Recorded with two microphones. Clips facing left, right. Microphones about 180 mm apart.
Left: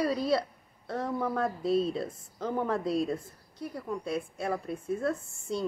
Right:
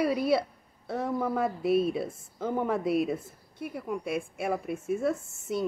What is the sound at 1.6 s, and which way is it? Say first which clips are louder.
Speech: right 2 dB; 25° left (ahead or behind).